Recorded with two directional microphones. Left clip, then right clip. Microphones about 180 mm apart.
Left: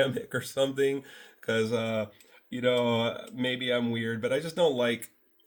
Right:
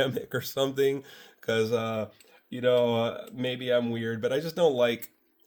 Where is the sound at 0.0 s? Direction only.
40° right (ahead or behind).